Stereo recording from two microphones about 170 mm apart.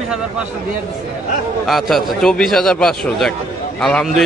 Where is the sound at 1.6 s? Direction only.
Centre (ahead or behind).